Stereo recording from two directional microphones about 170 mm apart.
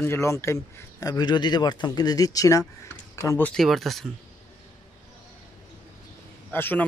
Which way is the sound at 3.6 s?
Centre (ahead or behind).